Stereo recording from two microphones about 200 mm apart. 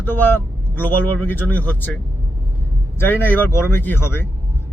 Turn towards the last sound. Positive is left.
turn(degrees=10)  # may be behind; listen again after turning